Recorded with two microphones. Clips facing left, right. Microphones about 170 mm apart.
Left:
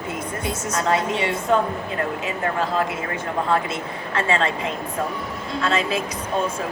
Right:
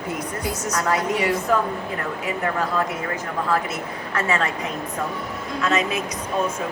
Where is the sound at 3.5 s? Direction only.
25° left (ahead or behind).